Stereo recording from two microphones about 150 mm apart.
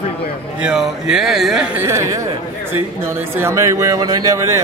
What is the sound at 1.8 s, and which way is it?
Speech, 20° right (ahead or behind).